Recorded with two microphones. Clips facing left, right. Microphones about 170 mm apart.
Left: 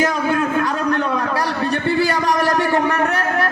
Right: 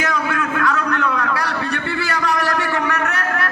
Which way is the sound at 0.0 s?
30° left (ahead or behind).